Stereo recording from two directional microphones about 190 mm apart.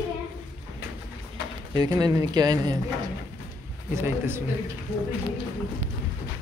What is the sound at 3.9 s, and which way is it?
Speech, 10° right (ahead or behind).